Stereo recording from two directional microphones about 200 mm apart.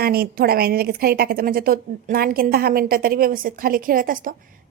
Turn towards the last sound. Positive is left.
turn(degrees=-45)  # may be behind; listen again after turning